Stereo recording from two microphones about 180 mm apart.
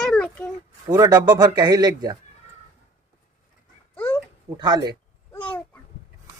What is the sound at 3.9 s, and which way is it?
Dog, 10° left (ahead or behind).